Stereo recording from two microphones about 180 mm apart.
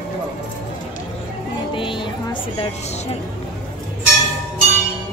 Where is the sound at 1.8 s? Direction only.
25° left (ahead or behind).